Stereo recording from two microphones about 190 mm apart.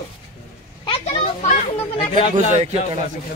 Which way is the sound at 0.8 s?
30° left (ahead or behind).